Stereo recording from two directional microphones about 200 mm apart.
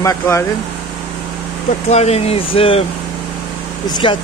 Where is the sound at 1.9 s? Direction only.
30° left (ahead or behind).